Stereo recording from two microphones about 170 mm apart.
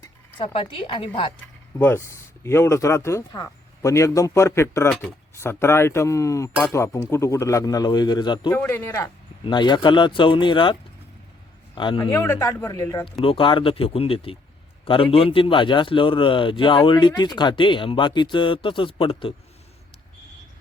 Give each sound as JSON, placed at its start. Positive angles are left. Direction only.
{"t": 0.3, "sound": "a man's voice", "side_deg": 30}
{"t": 1.8, "sound": "a man's voice", "side_deg": 15}
{"t": 8.4, "sound": "a man's voice", "side_deg": 10}
{"t": 12.2, "sound": "speech", "side_deg": 15}
{"t": 13.2, "sound": "a man's voice", "side_deg": 30}